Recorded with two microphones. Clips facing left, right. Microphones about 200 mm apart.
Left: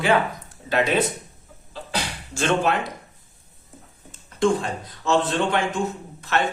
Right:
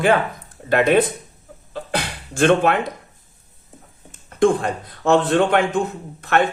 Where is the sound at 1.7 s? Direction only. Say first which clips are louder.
Right 4 dB; 55° right (ahead or behind).